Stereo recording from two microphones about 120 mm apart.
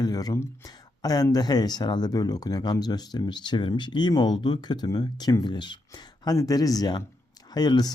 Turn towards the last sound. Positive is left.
turn(degrees=35)  # may be behind; listen again after turning